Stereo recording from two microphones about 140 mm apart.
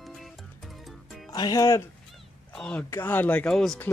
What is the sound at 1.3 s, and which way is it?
Speech, 25° left (ahead or behind).